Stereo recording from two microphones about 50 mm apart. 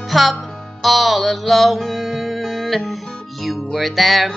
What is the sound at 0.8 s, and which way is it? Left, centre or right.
Music, centre.